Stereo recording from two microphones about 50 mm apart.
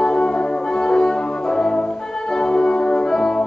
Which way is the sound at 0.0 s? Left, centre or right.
Centre.